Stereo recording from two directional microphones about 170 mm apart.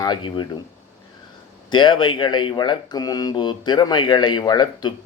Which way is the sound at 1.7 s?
25° left (ahead or behind).